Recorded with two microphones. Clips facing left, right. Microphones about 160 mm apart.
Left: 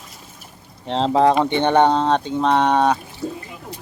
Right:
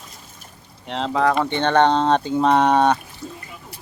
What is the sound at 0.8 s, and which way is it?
Speech, 30° left (ahead or behind).